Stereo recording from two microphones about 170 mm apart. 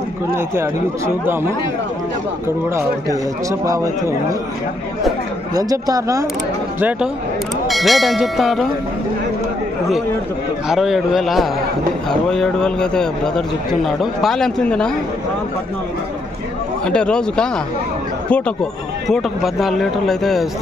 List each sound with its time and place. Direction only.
0.6 s speech: 15° right (ahead or behind)
3.4 s speech: 20° right (ahead or behind)
5.5 s speech: 20° right (ahead or behind)
6.8 s speech: 10° right (ahead or behind)
10.7 s speech: 5° right (ahead or behind)
16.8 s speech: 5° left (ahead or behind)